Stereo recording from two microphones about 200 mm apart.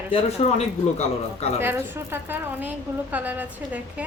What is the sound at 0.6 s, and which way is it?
Speech, 30° left (ahead or behind).